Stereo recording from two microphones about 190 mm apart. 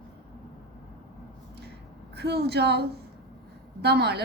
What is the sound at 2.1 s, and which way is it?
A woman's voice, 60° right (ahead or behind).